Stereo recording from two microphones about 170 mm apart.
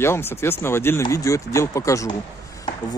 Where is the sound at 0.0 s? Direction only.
15° left (ahead or behind).